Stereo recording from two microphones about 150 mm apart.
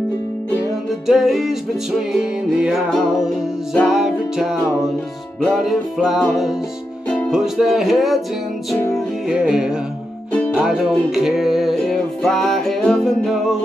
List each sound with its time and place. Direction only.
1.0 s music: centre (ahead or behind)
8.7 s music: 20° left (ahead or behind)
9.3 s music: 5° right (ahead or behind)